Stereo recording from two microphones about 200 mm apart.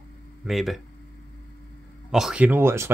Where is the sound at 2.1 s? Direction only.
5° right (ahead or behind).